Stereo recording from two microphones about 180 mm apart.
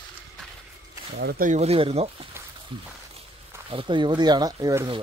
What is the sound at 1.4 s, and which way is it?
Speech, 35° right (ahead or behind).